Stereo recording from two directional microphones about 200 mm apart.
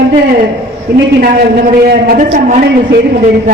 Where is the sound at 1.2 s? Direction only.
50° right (ahead or behind).